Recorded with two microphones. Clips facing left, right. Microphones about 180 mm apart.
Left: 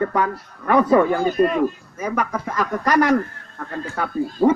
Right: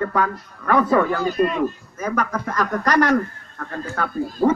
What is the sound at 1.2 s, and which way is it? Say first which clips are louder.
Speech: left 2 dB; 45° left (ahead or behind).